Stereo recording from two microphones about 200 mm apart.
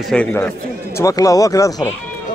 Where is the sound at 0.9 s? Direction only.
15° left (ahead or behind).